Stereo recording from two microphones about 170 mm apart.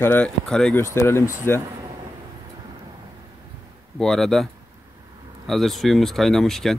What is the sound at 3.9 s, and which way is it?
Speech, centre (ahead or behind).